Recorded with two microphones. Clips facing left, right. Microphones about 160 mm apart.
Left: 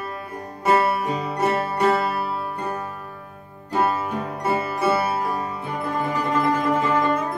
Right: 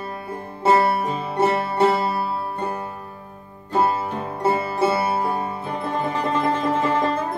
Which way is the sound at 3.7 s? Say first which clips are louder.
Right 1 dB; 30° right (ahead or behind).